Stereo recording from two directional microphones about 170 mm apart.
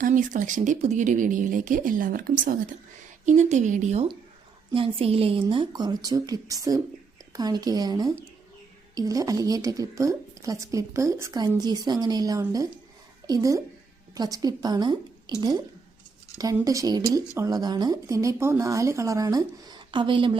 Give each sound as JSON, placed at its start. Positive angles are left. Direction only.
{"t": 0.0, "sound": "speech", "side_deg": -50}
{"t": 16.6, "sound": "speech", "side_deg": -20}